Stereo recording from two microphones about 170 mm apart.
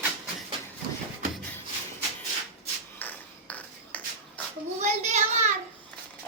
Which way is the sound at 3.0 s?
10° left (ahead or behind).